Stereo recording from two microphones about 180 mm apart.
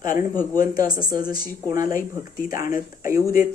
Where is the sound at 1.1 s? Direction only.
50° left (ahead or behind).